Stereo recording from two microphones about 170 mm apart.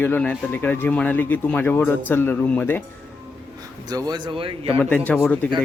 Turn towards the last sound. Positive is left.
turn(degrees=10)  # may be behind; listen again after turning